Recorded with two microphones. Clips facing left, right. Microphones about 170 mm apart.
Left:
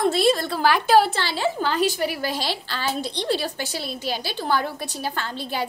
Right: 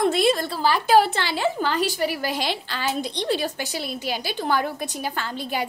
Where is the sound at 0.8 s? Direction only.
50° right (ahead or behind).